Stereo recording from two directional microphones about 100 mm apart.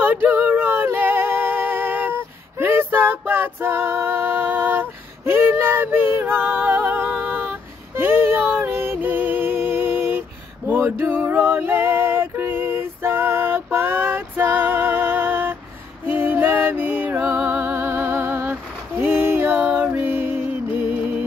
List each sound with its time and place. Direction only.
0.0 s female singing: 20° right (ahead or behind)
10.7 s a sound: 20° right (ahead or behind)
16.1 s music: 20° right (ahead or behind)